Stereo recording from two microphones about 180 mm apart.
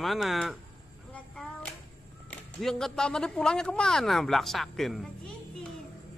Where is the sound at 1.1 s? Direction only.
5° left (ahead or behind).